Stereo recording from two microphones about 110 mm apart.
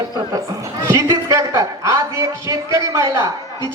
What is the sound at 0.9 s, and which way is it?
A man's voice, 30° right (ahead or behind).